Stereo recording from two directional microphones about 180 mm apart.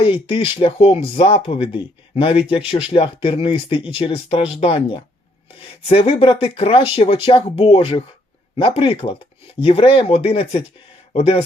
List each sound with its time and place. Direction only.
0.0 s speech: 30° left (ahead or behind)